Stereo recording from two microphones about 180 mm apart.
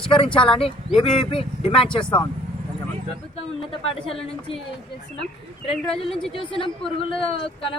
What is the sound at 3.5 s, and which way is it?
Speech, 30° left (ahead or behind).